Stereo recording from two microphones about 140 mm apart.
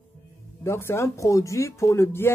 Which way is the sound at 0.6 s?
20° left (ahead or behind).